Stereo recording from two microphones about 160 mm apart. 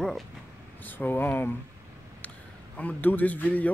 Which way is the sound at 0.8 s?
10° left (ahead or behind).